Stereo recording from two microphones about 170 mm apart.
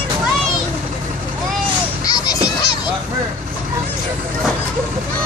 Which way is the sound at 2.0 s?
20° left (ahead or behind).